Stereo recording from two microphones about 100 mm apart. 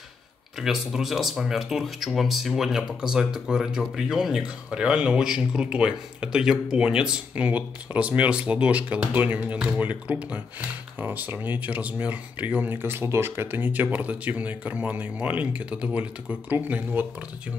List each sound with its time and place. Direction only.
0.6 s speech: 5° right (ahead or behind); by 17.1 s 20° right (ahead or behind)